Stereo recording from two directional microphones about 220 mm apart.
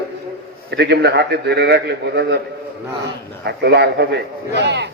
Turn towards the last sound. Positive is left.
turn(degrees=-50)  # may be behind; listen again after turning